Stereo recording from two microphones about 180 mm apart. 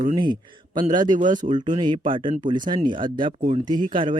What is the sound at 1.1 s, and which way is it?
Speech, 45° right (ahead or behind).